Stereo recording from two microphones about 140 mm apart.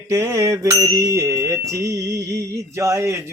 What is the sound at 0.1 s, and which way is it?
Music, 20° right (ahead or behind).